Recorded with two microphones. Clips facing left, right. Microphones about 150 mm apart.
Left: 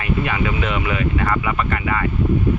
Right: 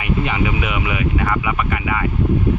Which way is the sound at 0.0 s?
15° right (ahead or behind).